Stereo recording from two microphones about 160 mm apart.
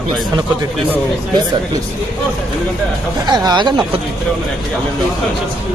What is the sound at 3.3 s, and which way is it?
Speech, 25° right (ahead or behind).